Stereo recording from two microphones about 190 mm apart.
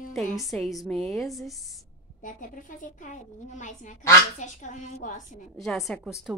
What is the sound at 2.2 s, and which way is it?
A woman's voice, 45° left (ahead or behind).